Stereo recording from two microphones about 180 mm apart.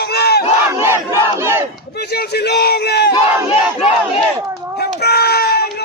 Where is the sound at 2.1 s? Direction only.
60° left (ahead or behind).